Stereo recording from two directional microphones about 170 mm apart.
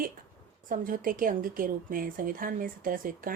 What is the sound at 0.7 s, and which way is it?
A woman's voice, 55° right (ahead or behind).